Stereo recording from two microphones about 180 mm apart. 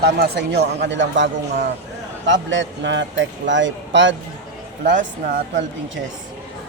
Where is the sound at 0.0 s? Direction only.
65° right (ahead or behind).